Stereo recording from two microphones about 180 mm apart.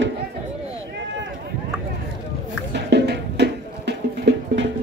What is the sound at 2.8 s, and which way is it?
Music, 70° right (ahead or behind).